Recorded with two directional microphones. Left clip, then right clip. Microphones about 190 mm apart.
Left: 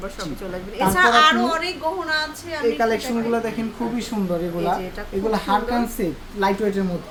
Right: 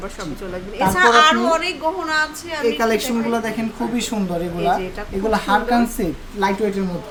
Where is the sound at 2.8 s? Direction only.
55° right (ahead or behind).